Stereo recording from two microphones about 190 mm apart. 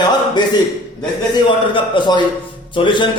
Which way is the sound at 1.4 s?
25° left (ahead or behind).